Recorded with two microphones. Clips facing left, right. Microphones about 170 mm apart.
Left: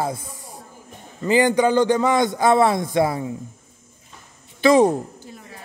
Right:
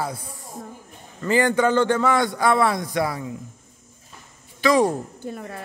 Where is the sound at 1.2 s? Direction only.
15° left (ahead or behind).